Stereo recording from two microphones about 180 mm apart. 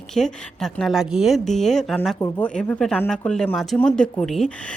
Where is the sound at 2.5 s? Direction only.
5° left (ahead or behind).